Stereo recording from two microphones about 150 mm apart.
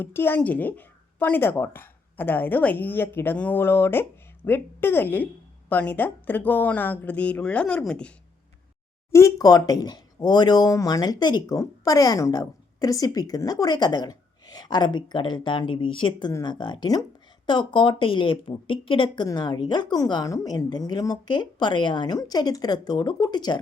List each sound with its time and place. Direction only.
0.0 s speech: 15° left (ahead or behind)
9.1 s speech: 20° left (ahead or behind)